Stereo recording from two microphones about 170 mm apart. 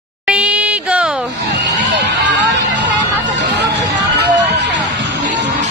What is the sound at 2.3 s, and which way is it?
Music, 90° right.